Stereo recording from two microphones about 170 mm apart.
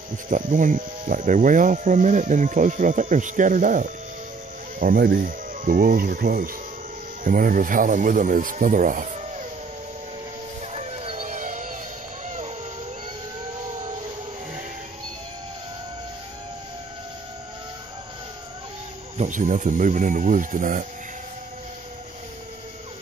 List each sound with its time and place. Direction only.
0.3 s speech: 50° right (ahead or behind)
6.1 s speech: 65° right (ahead or behind)
7.2 s speech: 55° right (ahead or behind)
10.7 s a sound: 40° right (ahead or behind)
13.7 s siren: 45° right (ahead or behind)
19.1 s speech: 45° right (ahead or behind)